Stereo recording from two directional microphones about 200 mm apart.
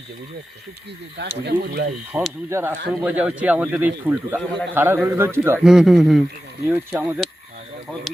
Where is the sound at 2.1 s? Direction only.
10° right (ahead or behind).